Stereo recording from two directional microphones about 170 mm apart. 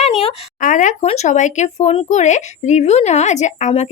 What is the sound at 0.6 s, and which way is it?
Speech, 50° left (ahead or behind).